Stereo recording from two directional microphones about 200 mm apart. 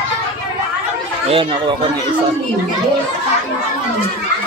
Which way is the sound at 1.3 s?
25° right (ahead or behind).